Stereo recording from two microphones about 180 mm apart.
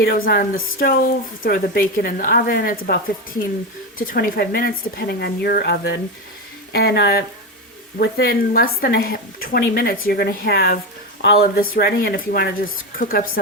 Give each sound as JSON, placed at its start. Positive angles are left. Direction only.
{"t": 0.0, "sound": "a woman's voice", "side_deg": 55}